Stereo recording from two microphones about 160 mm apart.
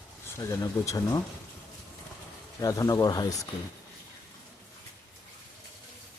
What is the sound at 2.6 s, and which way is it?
Speech, 20° left (ahead or behind).